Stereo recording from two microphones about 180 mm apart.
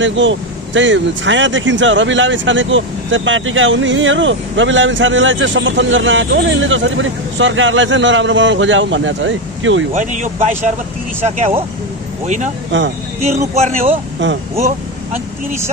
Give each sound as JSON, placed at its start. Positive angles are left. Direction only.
{"t": 0.0, "sound": "speech", "side_deg": -90}
{"t": 9.9, "sound": "speech", "side_deg": -45}
{"t": 12.7, "sound": "speech", "side_deg": -90}
{"t": 13.2, "sound": "speech", "side_deg": -40}